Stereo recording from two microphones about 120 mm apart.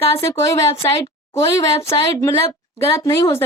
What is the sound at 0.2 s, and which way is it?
Speech, 25° left (ahead or behind).